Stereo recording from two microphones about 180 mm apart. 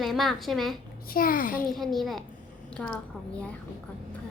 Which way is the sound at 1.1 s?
50° left (ahead or behind).